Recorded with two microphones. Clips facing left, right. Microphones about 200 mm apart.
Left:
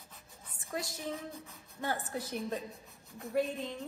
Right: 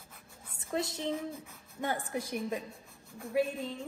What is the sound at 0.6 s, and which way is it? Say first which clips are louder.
A woman's voice: right 5 dB; 25° right (ahead or behind).